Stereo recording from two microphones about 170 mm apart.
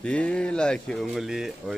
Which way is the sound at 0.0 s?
5° left (ahead or behind).